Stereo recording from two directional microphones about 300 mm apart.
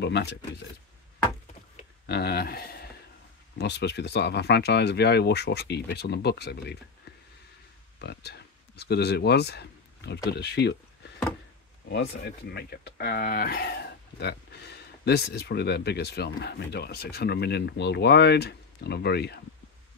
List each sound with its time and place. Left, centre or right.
0.0 s speech: left
2.0 s speech: left
8.0 s speech: left
11.9 s speech: left